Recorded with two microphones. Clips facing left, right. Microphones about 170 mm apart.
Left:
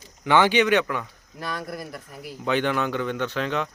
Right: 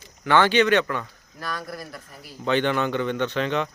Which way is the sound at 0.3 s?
15° left (ahead or behind).